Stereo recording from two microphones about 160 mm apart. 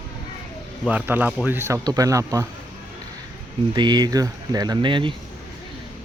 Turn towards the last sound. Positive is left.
turn(degrees=-30)  # may be behind; listen again after turning